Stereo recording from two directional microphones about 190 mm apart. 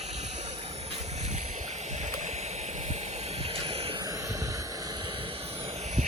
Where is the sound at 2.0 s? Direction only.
40° right (ahead or behind).